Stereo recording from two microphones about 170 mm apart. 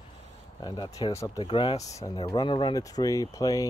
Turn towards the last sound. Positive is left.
turn(degrees=20)  # may be behind; listen again after turning